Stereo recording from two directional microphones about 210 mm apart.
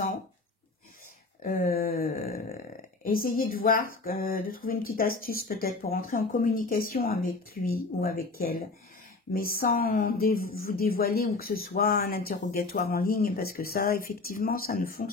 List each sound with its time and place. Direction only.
1.4 s speech: 40° left (ahead or behind)